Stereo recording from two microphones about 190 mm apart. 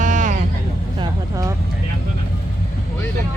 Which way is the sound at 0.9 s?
20° right (ahead or behind).